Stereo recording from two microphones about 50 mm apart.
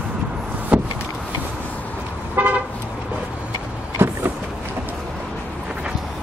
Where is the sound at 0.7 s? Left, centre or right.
Right.